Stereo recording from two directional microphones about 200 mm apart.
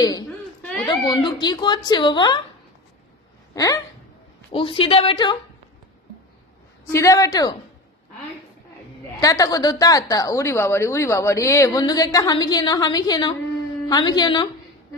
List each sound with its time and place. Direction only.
0.6 s a sound: 5° left (ahead or behind)
0.8 s speech: 20° left (ahead or behind)
3.5 s a woman's voice: 15° left (ahead or behind)
6.9 s a woman's voice: 15° left (ahead or behind)
9.1 s a woman's voice: 15° left (ahead or behind)